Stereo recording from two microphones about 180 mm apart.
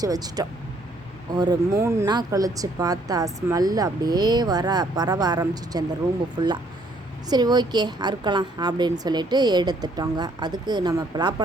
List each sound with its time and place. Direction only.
0.0 s speech: 20° right (ahead or behind)